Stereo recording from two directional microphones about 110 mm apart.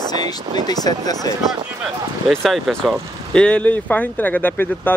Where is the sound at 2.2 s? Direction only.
Centre (ahead or behind).